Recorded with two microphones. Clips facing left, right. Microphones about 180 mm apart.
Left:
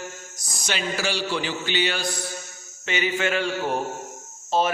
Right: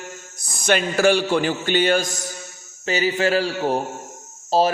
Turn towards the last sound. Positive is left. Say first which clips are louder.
# right 4 dB
turn(degrees=-35)  # may be behind; listen again after turning